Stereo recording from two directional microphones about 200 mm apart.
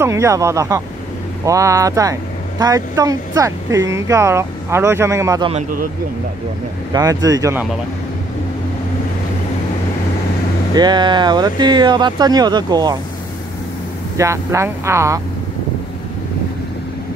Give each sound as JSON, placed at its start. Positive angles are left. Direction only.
{"t": 0.0, "sound": "speech", "side_deg": -15}
{"t": 5.5, "sound": "speech", "side_deg": -40}
{"t": 6.9, "sound": "speech", "side_deg": -20}
{"t": 10.7, "sound": "speech", "side_deg": -20}
{"t": 14.1, "sound": "speech", "side_deg": -15}